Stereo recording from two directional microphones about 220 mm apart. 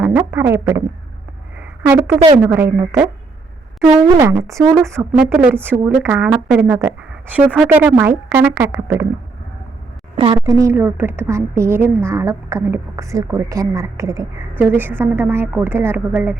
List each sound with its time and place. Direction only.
0.0 s a woman's voice: 10° right (ahead or behind)
1.5 s a sound: 10° right (ahead or behind)
2.4 s a woman's voice: 10° right (ahead or behind)
3.8 s speech: 35° right (ahead or behind)
4.2 s a woman's voice: 15° right (ahead or behind)
10.2 s a woman's voice: 20° right (ahead or behind)